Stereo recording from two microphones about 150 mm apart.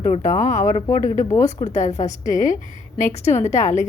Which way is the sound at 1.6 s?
50° left (ahead or behind).